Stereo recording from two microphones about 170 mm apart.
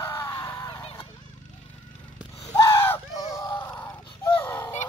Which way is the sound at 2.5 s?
20° left (ahead or behind).